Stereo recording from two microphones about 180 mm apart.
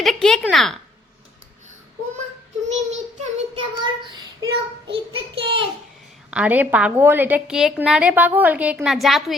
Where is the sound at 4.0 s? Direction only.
25° right (ahead or behind).